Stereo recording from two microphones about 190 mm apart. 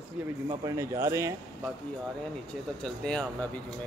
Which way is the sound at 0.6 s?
15° right (ahead or behind).